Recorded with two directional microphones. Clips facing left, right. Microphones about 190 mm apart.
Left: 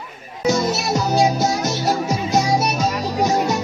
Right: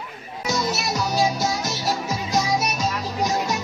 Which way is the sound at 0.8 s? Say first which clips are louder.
Left 5 dB; 25° left (ahead or behind).